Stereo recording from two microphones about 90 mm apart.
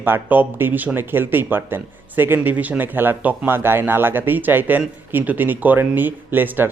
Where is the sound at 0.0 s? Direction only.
20° right (ahead or behind).